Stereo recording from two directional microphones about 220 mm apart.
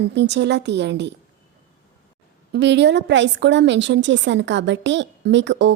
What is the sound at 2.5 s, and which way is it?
A woman's voice, 50° right (ahead or behind).